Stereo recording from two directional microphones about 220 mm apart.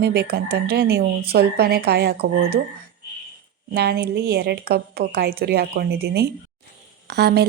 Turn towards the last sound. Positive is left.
turn(degrees=-50)  # may be behind; listen again after turning